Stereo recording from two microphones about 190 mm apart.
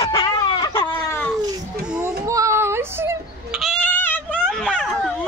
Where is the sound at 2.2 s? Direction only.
15° right (ahead or behind).